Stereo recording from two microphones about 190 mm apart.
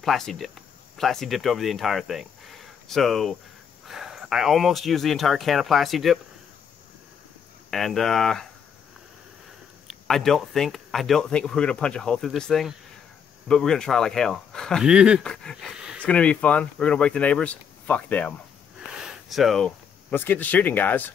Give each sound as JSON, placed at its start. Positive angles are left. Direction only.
{"t": 0.0, "sound": "speech", "side_deg": 0}
{"t": 7.7, "sound": "speech", "side_deg": 0}
{"t": 10.0, "sound": "speech", "side_deg": 0}
{"t": 16.0, "sound": "speech", "side_deg": 5}